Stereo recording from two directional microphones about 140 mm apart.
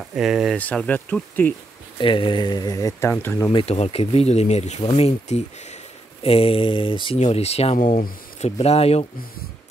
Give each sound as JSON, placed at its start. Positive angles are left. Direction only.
{"t": 0.0, "sound": "speech", "side_deg": -5}
{"t": 0.6, "sound": "speech", "side_deg": 10}
{"t": 2.0, "sound": "speech", "side_deg": 35}
{"t": 3.4, "sound": "speech", "side_deg": 45}
{"t": 6.2, "sound": "mantra", "side_deg": 45}
{"t": 7.2, "sound": "speech", "side_deg": 50}
{"t": 7.8, "sound": "speech", "side_deg": 70}
{"t": 8.5, "sound": "speech", "side_deg": 50}